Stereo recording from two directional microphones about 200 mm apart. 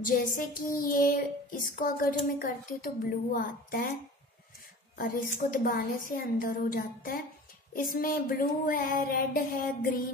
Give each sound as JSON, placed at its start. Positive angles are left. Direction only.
{"t": 0.0, "sound": "child singing", "side_deg": 45}
{"t": 3.3, "sound": "speech", "side_deg": 40}
{"t": 4.9, "sound": "child singing", "side_deg": 45}